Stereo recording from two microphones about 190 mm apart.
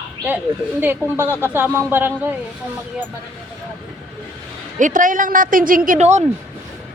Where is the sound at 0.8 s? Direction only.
10° right (ahead or behind).